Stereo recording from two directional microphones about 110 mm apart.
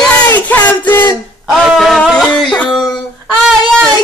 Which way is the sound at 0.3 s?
15° left (ahead or behind).